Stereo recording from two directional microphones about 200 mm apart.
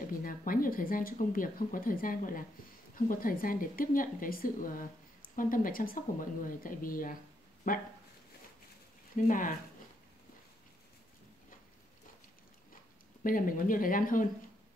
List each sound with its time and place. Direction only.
0.2 s speech: 45° left (ahead or behind)
9.1 s speech: 40° left (ahead or behind)
13.2 s speech: 45° left (ahead or behind)